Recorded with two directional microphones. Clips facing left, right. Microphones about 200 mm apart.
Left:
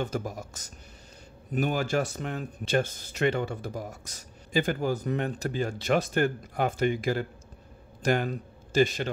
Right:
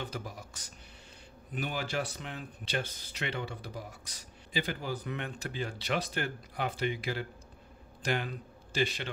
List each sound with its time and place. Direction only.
0.0 s a man's voice: 45° left (ahead or behind)